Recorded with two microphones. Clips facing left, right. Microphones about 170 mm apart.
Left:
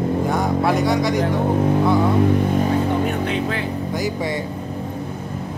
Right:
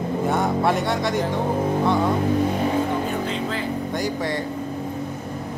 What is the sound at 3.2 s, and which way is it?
Music, 60° left (ahead or behind).